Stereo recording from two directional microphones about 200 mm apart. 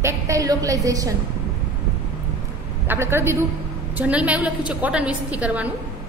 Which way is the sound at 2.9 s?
10° right (ahead or behind).